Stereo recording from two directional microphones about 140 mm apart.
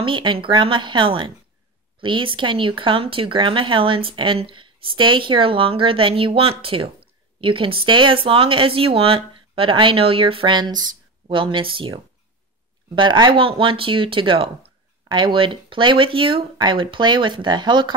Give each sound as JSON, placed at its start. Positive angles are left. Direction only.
{"t": 0.0, "sound": "speech", "side_deg": -35}